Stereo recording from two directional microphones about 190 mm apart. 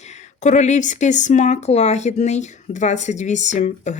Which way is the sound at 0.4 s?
40° left (ahead or behind).